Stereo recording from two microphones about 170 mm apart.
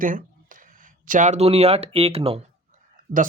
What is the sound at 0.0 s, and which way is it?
Speech, 55° right (ahead or behind).